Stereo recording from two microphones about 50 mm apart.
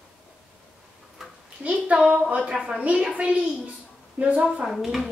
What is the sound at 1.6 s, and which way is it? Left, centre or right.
A woman's voice, right.